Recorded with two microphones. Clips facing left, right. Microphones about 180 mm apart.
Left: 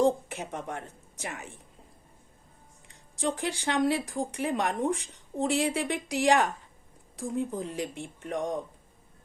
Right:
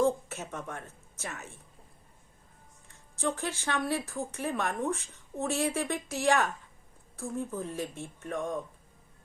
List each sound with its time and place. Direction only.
0.0 s speech: 15° left (ahead or behind)
3.2 s speech: 15° left (ahead or behind)